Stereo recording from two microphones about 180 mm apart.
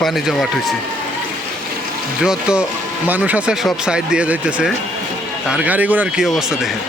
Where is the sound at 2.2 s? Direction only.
5° right (ahead or behind).